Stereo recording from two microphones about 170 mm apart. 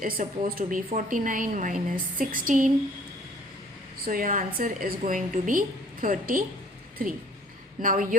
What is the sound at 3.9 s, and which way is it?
A woman's voice, 55° right (ahead or behind).